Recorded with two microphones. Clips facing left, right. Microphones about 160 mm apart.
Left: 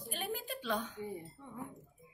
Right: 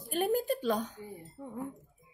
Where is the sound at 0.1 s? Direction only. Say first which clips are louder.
Right 12 dB; 45° right (ahead or behind).